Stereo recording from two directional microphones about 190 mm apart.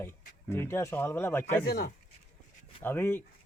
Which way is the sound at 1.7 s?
55° left (ahead or behind).